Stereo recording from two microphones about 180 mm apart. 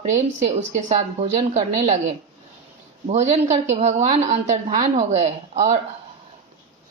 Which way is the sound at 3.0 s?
40° right (ahead or behind).